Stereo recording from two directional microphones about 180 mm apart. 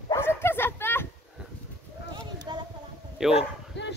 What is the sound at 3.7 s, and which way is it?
Dog, 75° left (ahead or behind).